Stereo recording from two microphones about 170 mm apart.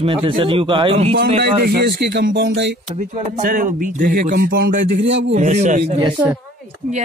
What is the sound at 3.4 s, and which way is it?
Speech, 50° right (ahead or behind).